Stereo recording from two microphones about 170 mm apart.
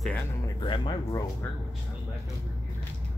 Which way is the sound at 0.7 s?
30° left (ahead or behind).